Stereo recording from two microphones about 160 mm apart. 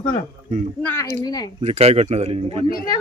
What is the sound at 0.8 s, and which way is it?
Speech, 15° left (ahead or behind).